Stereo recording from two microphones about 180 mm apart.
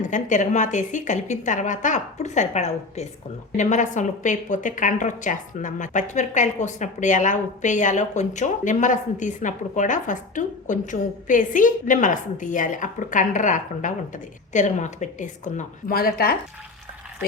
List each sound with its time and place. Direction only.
0.0 s a woman's voice: 45° left (ahead or behind)